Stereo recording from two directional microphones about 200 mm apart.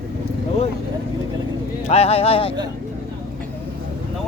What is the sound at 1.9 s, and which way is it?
Speech, 30° left (ahead or behind).